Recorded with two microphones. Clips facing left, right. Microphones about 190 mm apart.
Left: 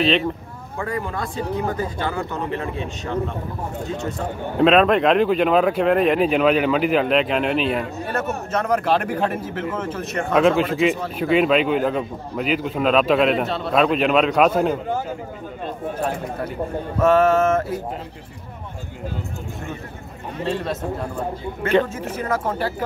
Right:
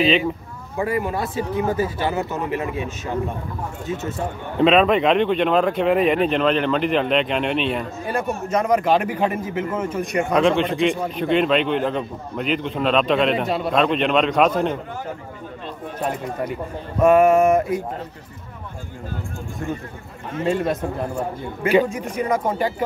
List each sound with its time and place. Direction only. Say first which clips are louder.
0.0 s a man's voice: right 1 dB; centre (ahead or behind)
0.7 s a man's voice: right 4 dB; 20° right (ahead or behind)
4.6 s a man's voice: even; centre (ahead or behind)
8.1 s speech: right 3 dB; 10° right (ahead or behind)
10.3 s a man's voice: left 2 dB; 5° left (ahead or behind)
17.0 s speech: right 2 dB; 15° right (ahead or behind)
21.6 s speech: right 1 dB; 10° right (ahead or behind)